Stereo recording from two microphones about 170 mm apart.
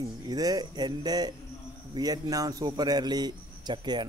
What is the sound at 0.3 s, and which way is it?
Speech, 25° right (ahead or behind).